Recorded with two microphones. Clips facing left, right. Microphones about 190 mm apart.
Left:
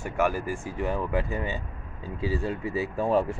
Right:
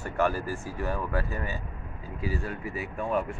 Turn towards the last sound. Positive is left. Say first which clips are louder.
# left 5 dB
turn(degrees=30)  # may be behind; listen again after turning